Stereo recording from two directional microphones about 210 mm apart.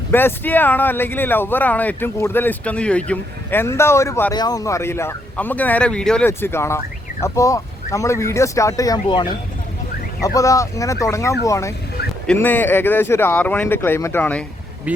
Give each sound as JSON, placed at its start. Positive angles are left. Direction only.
{"t": 0.1, "sound": "speech", "side_deg": 10}
{"t": 14.9, "sound": "speech", "side_deg": -5}